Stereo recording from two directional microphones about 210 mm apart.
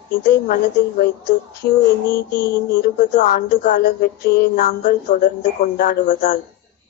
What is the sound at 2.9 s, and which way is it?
A woman's voice, 40° left (ahead or behind).